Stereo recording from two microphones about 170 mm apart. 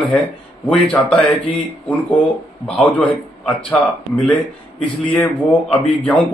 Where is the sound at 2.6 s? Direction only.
5° left (ahead or behind).